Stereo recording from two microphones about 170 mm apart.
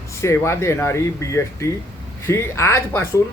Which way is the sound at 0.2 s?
15° left (ahead or behind).